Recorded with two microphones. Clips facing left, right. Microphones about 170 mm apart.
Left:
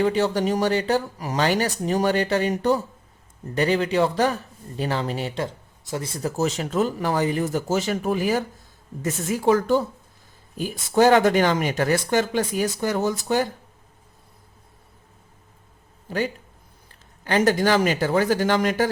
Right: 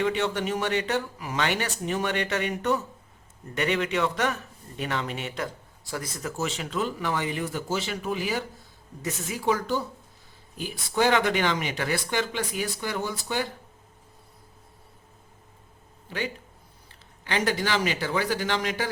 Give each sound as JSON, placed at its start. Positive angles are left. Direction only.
{"t": 0.0, "sound": "speech", "side_deg": 35}
{"t": 16.0, "sound": "speech", "side_deg": 40}